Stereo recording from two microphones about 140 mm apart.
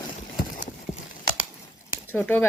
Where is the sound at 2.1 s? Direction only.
15° left (ahead or behind).